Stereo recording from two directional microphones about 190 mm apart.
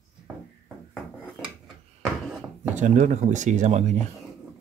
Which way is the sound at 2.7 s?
40° right (ahead or behind).